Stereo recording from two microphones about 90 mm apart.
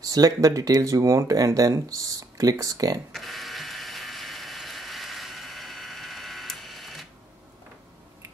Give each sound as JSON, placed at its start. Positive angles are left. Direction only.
{"t": 0.0, "sound": "speech", "side_deg": -40}
{"t": 3.1, "sound": "ratchet", "side_deg": 0}